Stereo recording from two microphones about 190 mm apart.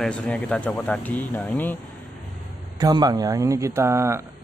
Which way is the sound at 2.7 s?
20° right (ahead or behind).